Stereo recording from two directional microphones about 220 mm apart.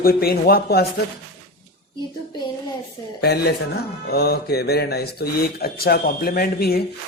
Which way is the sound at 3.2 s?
45° left (ahead or behind).